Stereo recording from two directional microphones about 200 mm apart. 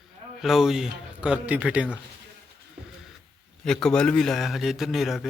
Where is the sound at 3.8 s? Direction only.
5° left (ahead or behind).